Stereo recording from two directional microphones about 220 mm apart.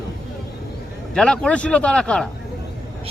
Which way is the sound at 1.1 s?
5° left (ahead or behind).